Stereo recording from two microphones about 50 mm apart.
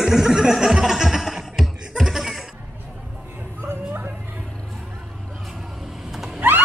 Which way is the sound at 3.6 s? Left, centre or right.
Right.